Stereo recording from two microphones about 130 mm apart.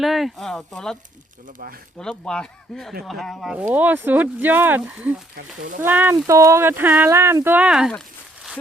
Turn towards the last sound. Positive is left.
turn(degrees=-5)  # may be behind; listen again after turning